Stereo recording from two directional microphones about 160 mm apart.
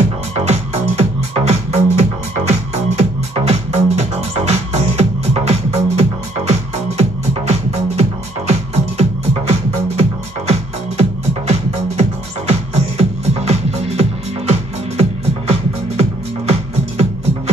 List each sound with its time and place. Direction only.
0.5 s music: 40° right (ahead or behind)
12.0 s music: 40° right (ahead or behind)